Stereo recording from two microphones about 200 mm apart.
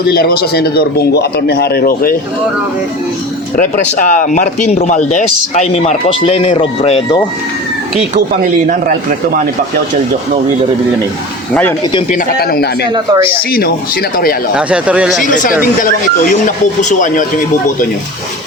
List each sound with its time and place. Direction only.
0.1 s speech: 50° left (ahead or behind)
3.6 s speech: 40° left (ahead or behind)
8.7 s a man's voice: 45° right (ahead or behind)
12.1 s speech: 50° left (ahead or behind)
12.9 s speech: 20° right (ahead or behind)
13.5 s speech: 50° left (ahead or behind)
14.5 s speech: 5° right (ahead or behind)
15.2 s speech: 40° left (ahead or behind)